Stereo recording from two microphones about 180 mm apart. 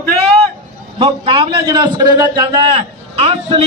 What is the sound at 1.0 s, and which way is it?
A man's voice, 30° right (ahead or behind).